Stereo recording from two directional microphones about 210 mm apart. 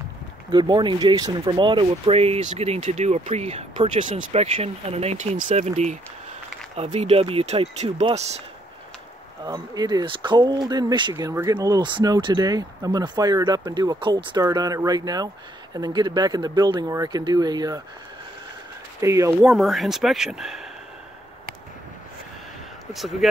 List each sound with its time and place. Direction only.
0.5 s speech: 20° right (ahead or behind)
9.5 s speech: 20° right (ahead or behind)
18.9 s speech: 15° right (ahead or behind)
19.4 s speech: centre (ahead or behind)